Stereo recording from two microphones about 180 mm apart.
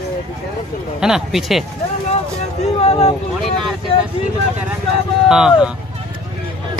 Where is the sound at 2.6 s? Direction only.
35° left (ahead or behind).